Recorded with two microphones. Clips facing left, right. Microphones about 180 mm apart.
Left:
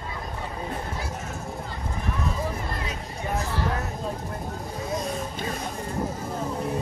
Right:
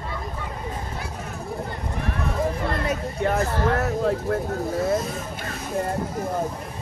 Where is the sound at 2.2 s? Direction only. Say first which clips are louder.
Right 7 dB; 60° right (ahead or behind).